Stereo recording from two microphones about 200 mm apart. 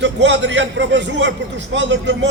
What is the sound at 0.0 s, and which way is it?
A man's voice, 65° right (ahead or behind).